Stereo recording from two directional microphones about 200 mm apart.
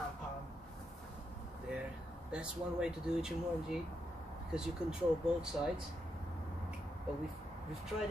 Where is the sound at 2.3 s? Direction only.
5° right (ahead or behind).